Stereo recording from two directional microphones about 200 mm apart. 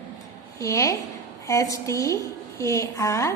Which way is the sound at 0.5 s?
15° left (ahead or behind).